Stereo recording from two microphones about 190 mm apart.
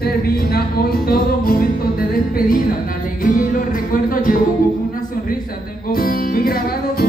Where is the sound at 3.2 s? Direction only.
45° left (ahead or behind).